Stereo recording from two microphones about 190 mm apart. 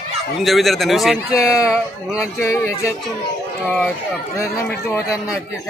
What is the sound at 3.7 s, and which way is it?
Speech, 5° left (ahead or behind).